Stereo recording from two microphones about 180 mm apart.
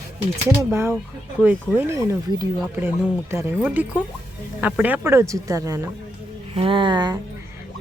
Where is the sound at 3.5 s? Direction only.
5° right (ahead or behind).